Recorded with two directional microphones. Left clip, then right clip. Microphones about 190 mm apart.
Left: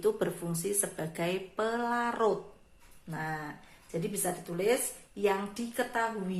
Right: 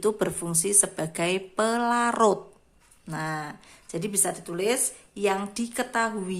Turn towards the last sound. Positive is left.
turn(degrees=-45)  # may be behind; listen again after turning